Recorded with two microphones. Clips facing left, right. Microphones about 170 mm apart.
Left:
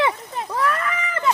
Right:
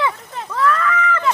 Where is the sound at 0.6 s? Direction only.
20° left (ahead or behind).